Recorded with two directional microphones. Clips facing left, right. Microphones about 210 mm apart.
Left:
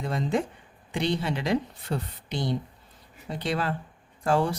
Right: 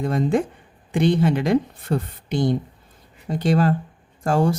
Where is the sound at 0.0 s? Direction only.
50° right (ahead or behind).